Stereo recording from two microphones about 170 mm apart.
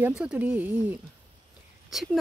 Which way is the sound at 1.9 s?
Centre (ahead or behind).